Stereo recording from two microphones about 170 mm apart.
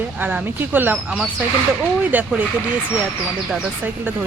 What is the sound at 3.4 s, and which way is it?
Speech, 10° right (ahead or behind).